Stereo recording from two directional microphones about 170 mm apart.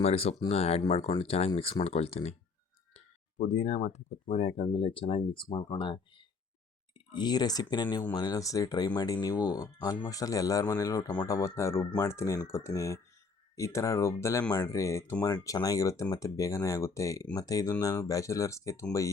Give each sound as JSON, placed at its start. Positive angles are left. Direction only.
{"t": 0.0, "sound": "speech", "side_deg": 35}